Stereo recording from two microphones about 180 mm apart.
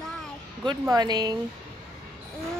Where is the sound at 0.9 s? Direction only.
20° right (ahead or behind).